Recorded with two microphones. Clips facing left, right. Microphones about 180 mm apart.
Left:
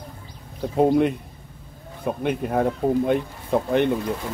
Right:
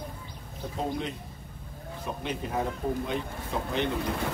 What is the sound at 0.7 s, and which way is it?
Speech, 60° left (ahead or behind).